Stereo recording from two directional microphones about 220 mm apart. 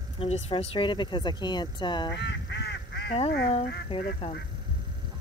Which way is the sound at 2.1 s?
50° left (ahead or behind).